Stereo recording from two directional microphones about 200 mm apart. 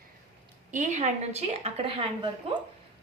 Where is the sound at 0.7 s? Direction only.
35° right (ahead or behind).